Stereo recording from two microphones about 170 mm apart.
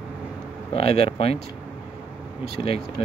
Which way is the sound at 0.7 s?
35° left (ahead or behind).